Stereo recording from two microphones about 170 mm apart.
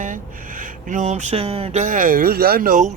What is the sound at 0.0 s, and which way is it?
A man's voice, 50° right (ahead or behind).